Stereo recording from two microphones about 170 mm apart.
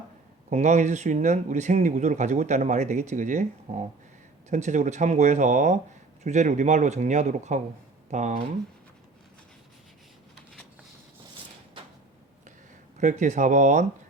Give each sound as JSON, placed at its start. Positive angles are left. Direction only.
{"t": 0.5, "sound": "speech", "side_deg": -45}
{"t": 13.0, "sound": "speech", "side_deg": -45}